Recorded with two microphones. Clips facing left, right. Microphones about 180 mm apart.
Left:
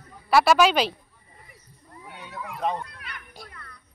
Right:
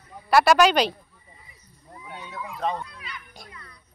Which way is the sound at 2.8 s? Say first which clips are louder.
Right 2 dB; 60° left (ahead or behind).